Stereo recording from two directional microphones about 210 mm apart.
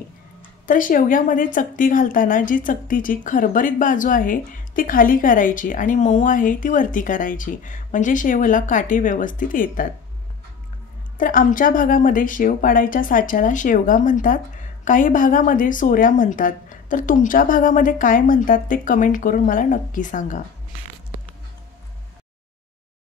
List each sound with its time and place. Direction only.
0.7 s speech: 40° left (ahead or behind)
11.1 s speech: 40° left (ahead or behind)